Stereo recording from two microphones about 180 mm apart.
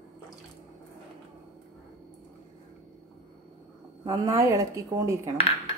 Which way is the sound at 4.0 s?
20° right (ahead or behind).